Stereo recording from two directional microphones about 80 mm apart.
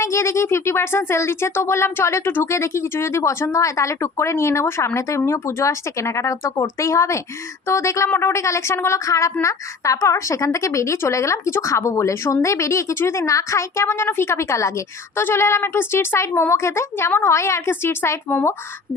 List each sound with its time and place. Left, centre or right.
0.0 s a woman's voice: left